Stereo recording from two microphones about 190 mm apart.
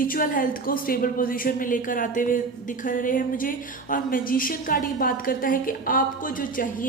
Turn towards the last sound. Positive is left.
turn(degrees=45)  # may be behind; listen again after turning